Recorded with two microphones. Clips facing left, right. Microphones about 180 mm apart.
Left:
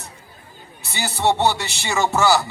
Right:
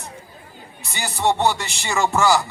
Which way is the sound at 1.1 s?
5° left (ahead or behind).